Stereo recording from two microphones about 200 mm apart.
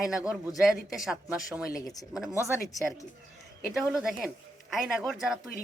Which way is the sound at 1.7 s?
20° left (ahead or behind).